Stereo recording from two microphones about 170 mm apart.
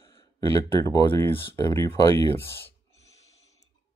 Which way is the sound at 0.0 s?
30° left (ahead or behind).